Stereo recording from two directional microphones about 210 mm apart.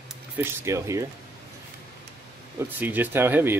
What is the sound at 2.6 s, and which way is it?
Speech, 10° right (ahead or behind).